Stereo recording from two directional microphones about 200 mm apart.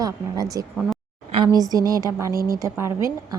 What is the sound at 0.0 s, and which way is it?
A woman's voice, 20° right (ahead or behind).